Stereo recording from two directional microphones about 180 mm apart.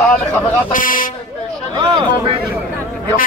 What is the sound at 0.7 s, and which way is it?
Speech, 50° left (ahead or behind).